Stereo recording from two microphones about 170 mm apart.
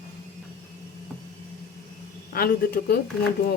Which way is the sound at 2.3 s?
60° left (ahead or behind).